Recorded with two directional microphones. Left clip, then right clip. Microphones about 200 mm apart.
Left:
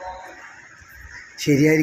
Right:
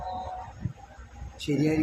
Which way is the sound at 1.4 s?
20° left (ahead or behind).